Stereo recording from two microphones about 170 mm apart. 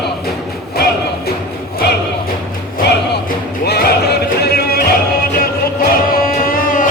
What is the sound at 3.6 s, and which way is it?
Music, 70° left (ahead or behind).